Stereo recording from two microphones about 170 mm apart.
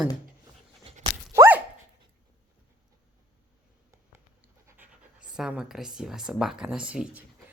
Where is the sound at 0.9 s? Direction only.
35° right (ahead or behind).